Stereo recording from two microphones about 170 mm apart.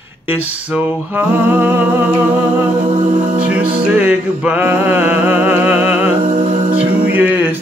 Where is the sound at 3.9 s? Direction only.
10° right (ahead or behind).